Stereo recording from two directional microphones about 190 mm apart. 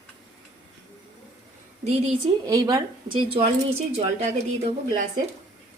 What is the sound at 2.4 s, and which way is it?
Speech, 20° right (ahead or behind).